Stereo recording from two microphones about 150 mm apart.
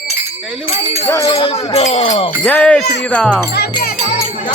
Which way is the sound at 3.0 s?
10° left (ahead or behind).